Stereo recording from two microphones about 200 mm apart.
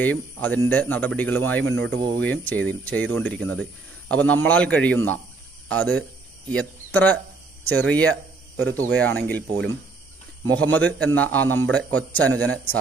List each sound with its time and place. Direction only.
0.0 s a man's voice: 10° left (ahead or behind)
1.7 s speech: 70° right (ahead or behind)
2.1 s a man's voice: 5° left (ahead or behind)
10.4 s a man's voice: 10° left (ahead or behind)